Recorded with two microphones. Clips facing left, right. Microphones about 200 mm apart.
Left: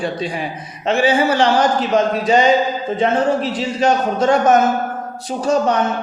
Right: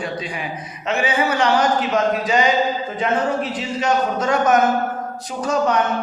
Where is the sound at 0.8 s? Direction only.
30° left (ahead or behind).